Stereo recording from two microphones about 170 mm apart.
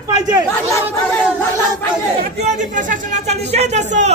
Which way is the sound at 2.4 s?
40° right (ahead or behind).